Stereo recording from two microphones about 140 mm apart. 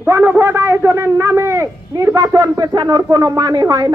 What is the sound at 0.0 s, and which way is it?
Speech, 15° right (ahead or behind).